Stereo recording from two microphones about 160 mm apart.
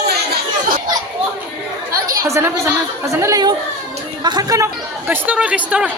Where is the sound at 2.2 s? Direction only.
20° right (ahead or behind).